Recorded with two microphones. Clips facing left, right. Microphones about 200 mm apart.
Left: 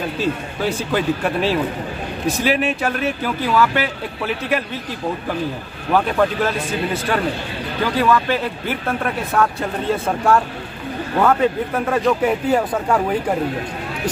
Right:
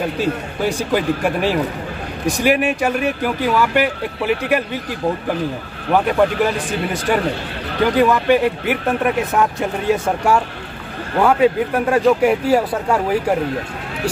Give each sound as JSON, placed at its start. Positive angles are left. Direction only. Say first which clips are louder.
{"t": 0.2, "sound": "speech", "louder": "left 1 dB", "side_deg": -15}
{"t": 5.9, "sound": "speech", "louder": "right 2 dB", "side_deg": -15}